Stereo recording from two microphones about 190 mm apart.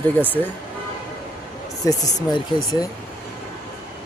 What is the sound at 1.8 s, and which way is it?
Speech, 20° left (ahead or behind).